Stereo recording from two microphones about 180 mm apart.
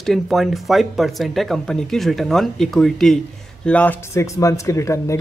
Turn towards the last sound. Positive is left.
turn(degrees=15)  # may be behind; listen again after turning